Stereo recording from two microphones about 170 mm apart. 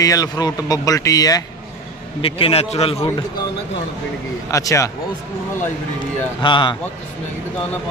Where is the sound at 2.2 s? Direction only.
35° left (ahead or behind).